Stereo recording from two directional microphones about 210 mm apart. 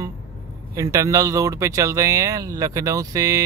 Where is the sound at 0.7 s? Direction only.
15° right (ahead or behind).